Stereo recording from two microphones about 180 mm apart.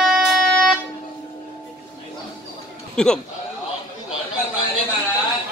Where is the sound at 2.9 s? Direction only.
5° left (ahead or behind).